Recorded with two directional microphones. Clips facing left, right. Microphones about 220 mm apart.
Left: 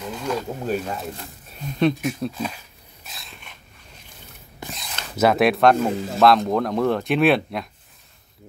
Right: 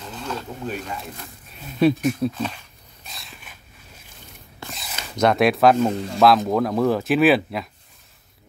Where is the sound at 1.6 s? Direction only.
5° right (ahead or behind).